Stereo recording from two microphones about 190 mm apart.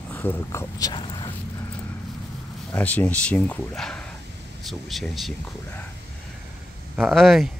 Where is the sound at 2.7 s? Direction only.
10° left (ahead or behind).